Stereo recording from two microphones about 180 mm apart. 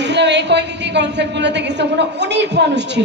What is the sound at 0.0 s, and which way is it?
A woman's voice, 75° right (ahead or behind).